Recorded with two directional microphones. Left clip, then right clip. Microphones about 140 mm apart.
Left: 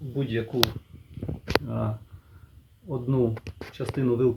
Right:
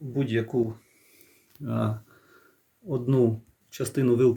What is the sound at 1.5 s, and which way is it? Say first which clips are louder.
Speech: left 4 dB; 35° right (ahead or behind).